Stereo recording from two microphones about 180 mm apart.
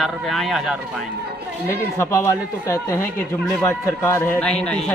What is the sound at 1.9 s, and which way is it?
Speech, 15° left (ahead or behind).